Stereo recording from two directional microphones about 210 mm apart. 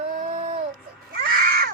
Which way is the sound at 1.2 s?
45° right (ahead or behind).